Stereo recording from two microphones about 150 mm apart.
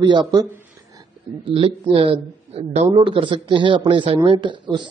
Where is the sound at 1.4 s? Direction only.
40° right (ahead or behind).